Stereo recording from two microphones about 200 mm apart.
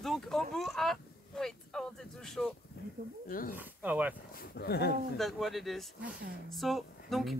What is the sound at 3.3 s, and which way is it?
Speech, 45° left (ahead or behind).